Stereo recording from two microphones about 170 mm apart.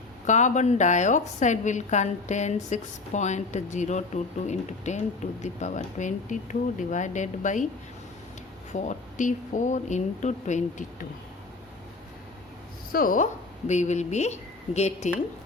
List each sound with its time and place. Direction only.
0.3 s a woman's voice: 45° left (ahead or behind)
8.7 s a woman's voice: 45° left (ahead or behind)
12.9 s speech: 55° left (ahead or behind)
13.7 s a woman's voice: 45° left (ahead or behind)